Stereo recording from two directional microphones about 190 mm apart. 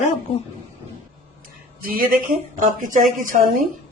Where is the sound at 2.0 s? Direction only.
45° right (ahead or behind).